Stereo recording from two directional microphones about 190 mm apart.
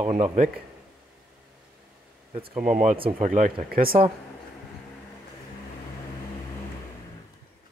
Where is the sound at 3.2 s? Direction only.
45° right (ahead or behind).